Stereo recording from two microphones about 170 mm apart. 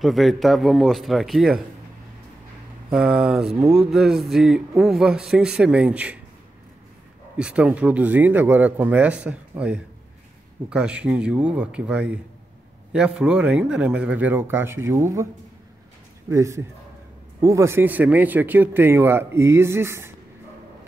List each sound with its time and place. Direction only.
0.0 s a man's voice: centre (ahead or behind)
2.9 s a man's voice: 5° right (ahead or behind)
7.3 s speech: 5° right (ahead or behind)
16.3 s speech: 15° right (ahead or behind)